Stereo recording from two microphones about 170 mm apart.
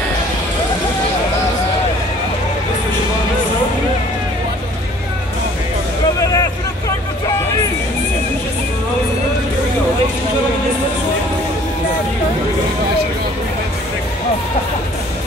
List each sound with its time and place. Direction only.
6.1 s vehicle: 20° left (ahead or behind)